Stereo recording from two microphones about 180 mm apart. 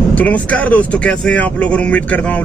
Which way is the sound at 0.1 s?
10° left (ahead or behind).